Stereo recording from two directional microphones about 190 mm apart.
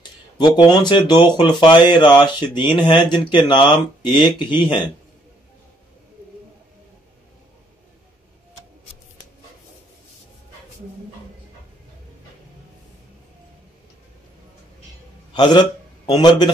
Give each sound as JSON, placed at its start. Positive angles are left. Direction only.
{"t": 0.4, "sound": "speech", "side_deg": 25}
{"t": 15.3, "sound": "a man's voice", "side_deg": 20}